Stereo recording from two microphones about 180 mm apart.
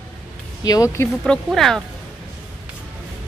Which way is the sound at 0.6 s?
20° left (ahead or behind).